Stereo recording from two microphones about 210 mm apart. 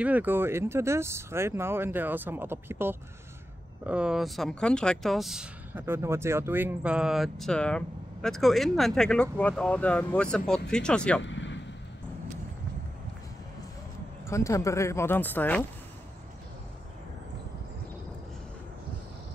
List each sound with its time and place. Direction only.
0.0 s speech: 10° right (ahead or behind)
11.2 s vehicle: 60° left (ahead or behind)
14.2 s speech: 15° left (ahead or behind)